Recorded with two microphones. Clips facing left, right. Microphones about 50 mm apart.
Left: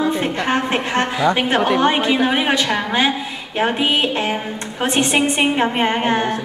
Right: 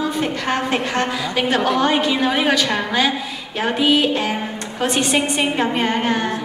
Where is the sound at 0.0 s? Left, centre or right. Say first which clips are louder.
Left 2 dB; left.